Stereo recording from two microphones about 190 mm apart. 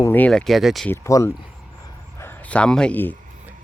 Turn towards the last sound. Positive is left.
turn(degrees=10)  # may be behind; listen again after turning